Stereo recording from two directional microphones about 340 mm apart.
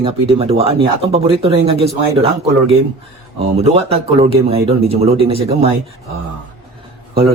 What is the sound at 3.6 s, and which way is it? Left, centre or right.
Speech, centre.